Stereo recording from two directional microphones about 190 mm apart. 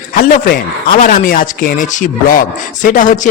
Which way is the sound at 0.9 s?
45° left (ahead or behind).